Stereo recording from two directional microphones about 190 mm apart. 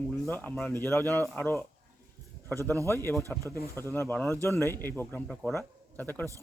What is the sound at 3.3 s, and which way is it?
Speech, 15° left (ahead or behind).